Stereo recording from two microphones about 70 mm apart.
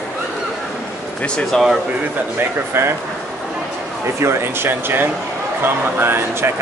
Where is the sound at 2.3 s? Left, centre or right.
Right.